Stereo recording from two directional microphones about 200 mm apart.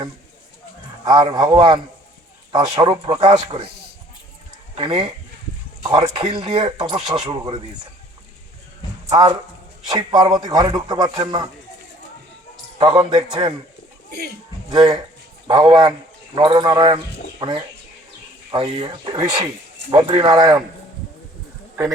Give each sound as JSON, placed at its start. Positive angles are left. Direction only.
{"t": 1.0, "sound": "speech", "side_deg": -20}
{"t": 4.8, "sound": "speech", "side_deg": -25}
{"t": 9.0, "sound": "speech", "side_deg": -20}
{"t": 12.8, "sound": "speech", "side_deg": -20}
{"t": 14.1, "sound": "speech", "side_deg": -55}
{"t": 14.7, "sound": "speech", "side_deg": -20}